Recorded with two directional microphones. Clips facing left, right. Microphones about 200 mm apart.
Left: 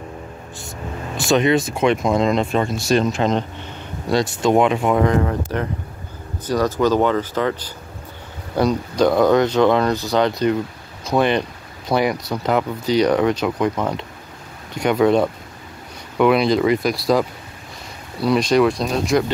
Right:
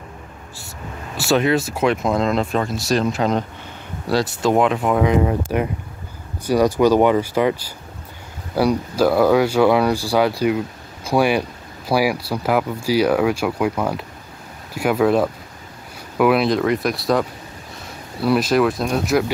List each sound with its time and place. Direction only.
1.1 s speech: 5° right (ahead or behind)
5.1 s speech: 15° right (ahead or behind)